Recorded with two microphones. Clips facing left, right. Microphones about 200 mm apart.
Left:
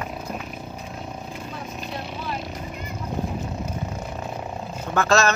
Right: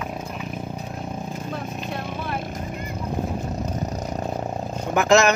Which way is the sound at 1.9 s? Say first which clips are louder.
Right 1 dB; 55° right (ahead or behind).